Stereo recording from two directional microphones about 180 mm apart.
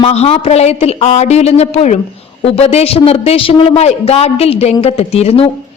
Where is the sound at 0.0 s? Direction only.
35° left (ahead or behind).